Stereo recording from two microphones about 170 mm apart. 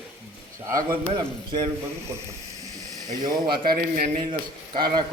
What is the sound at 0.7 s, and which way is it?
Speech, 20° right (ahead or behind).